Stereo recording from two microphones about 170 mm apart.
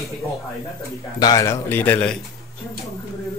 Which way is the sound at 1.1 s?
20° left (ahead or behind).